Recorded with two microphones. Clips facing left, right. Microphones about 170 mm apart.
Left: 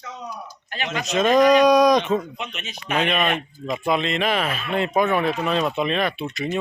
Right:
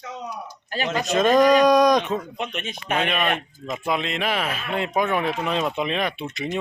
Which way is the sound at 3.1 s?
5° right (ahead or behind).